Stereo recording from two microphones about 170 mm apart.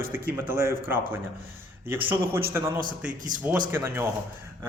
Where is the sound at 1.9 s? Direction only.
10° right (ahead or behind).